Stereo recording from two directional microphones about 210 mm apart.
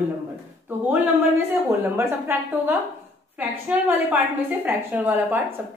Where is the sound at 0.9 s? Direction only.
10° right (ahead or behind).